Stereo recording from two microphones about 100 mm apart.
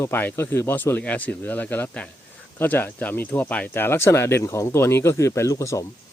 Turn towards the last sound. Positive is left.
turn(degrees=30)  # may be behind; listen again after turning